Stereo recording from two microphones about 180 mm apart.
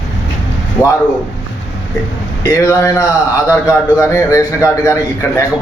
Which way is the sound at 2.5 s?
15° left (ahead or behind).